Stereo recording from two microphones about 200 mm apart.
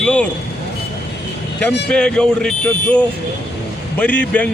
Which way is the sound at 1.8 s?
5° left (ahead or behind).